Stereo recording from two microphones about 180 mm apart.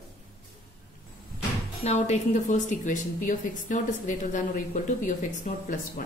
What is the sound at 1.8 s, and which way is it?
A woman's voice, 40° left (ahead or behind).